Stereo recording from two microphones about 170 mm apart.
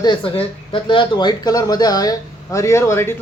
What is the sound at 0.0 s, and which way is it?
Speech, 30° left (ahead or behind).